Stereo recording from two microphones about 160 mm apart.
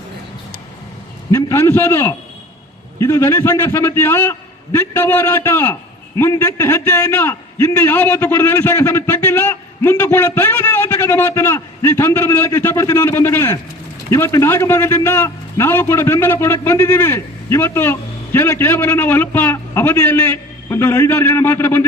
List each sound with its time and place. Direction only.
1.3 s a man's voice: 15° left (ahead or behind)